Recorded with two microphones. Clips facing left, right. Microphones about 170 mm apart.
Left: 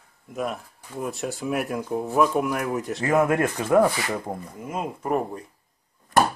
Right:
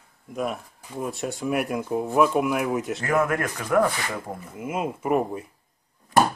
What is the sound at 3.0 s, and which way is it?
Speech, 20° left (ahead or behind).